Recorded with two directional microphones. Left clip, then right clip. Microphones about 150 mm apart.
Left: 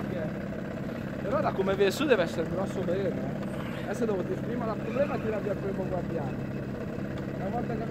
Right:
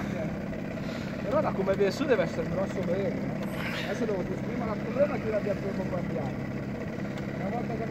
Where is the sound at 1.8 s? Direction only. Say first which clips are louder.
Left 2 dB; 35° left (ahead or behind).